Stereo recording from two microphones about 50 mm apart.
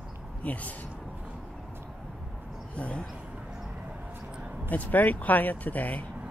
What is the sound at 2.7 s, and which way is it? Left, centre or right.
Speech, left.